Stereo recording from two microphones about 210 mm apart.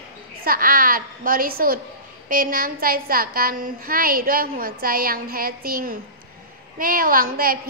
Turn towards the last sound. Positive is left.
turn(degrees=-45)  # may be behind; listen again after turning